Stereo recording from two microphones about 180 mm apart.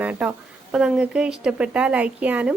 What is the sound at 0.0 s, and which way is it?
A woman's voice, 10° right (ahead or behind).